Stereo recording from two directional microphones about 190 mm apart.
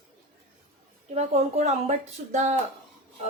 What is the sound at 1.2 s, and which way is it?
A woman's voice, 35° right (ahead or behind).